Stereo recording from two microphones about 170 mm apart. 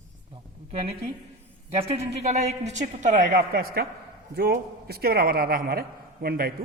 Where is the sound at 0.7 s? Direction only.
35° right (ahead or behind).